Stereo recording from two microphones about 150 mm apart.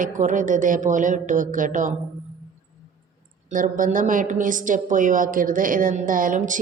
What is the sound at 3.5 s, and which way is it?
A woman's voice, 60° right (ahead or behind).